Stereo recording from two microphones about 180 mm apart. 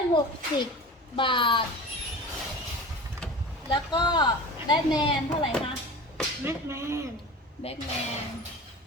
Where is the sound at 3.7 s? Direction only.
25° left (ahead or behind).